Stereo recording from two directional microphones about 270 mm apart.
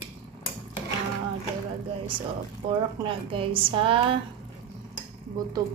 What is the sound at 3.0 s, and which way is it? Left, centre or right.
Speech, centre.